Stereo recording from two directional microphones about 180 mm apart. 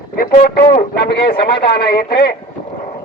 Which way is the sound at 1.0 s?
60° left (ahead or behind).